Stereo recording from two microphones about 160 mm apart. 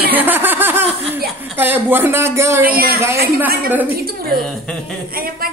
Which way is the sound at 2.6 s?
70° right (ahead or behind).